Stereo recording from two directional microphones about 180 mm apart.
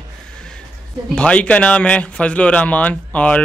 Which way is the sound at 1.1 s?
5° left (ahead or behind).